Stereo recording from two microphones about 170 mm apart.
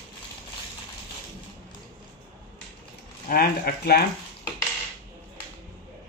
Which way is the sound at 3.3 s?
65° left (ahead or behind).